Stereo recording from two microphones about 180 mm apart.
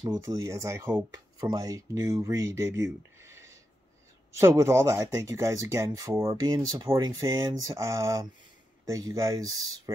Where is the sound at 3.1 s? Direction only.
15° right (ahead or behind).